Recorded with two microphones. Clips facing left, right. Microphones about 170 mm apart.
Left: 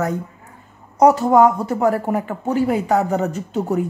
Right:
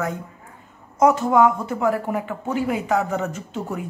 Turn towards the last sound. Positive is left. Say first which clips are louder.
# left 8 dB
turn(degrees=40)  # may be behind; listen again after turning